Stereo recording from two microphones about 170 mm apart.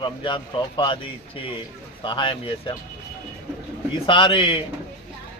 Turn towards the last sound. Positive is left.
turn(degrees=30)  # may be behind; listen again after turning